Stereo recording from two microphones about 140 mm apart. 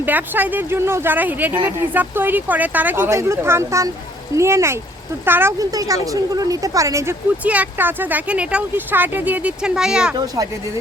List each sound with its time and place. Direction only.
0.0 s speech: 15° right (ahead or behind)